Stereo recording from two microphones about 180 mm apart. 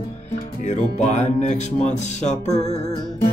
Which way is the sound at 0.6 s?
40° left (ahead or behind).